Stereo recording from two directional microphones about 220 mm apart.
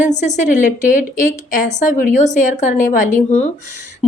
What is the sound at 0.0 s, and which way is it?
A woman's voice, 35° left (ahead or behind).